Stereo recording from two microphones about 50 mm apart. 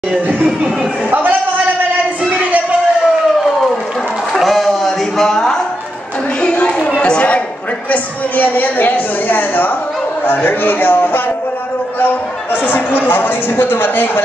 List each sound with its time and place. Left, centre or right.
0.3 s speech: right
2.2 s a sound: right
4.3 s music: centre
6.4 s a sound: left
7.0 s chatter: left
7.9 s a woman's voice: left
12.6 s a woman's voice: left